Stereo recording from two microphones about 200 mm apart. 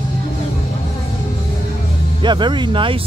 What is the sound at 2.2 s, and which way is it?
Speech, 25° right (ahead or behind).